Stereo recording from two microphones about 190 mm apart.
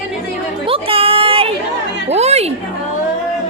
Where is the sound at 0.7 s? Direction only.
30° right (ahead or behind).